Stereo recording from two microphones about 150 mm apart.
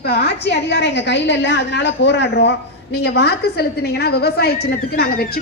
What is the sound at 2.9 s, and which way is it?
A woman's voice, 90° left.